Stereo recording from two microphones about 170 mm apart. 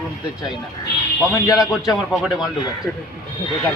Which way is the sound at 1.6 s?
5° right (ahead or behind).